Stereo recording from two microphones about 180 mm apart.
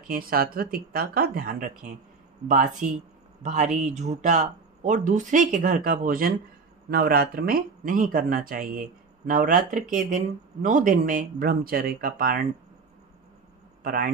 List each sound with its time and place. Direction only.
0.1 s speech: 55° right (ahead or behind)
13.8 s speech: 50° right (ahead or behind)